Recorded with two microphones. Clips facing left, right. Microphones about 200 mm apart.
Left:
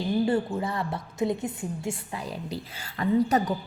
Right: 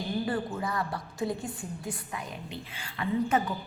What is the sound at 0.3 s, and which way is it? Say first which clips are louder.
A woman's voice: left 5 dB; 25° left (ahead or behind).